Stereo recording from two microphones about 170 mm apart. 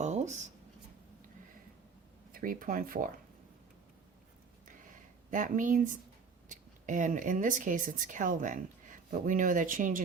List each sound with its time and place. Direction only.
0.0 s writing: 45° right (ahead or behind)
2.3 s speech: 55° right (ahead or behind)
4.9 s a sound: 50° right (ahead or behind)
6.5 s speech: 50° right (ahead or behind)